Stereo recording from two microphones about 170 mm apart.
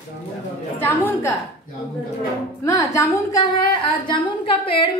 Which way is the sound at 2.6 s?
20° left (ahead or behind).